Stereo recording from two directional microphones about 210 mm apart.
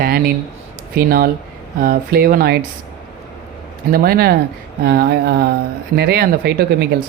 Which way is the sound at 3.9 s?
45° right (ahead or behind).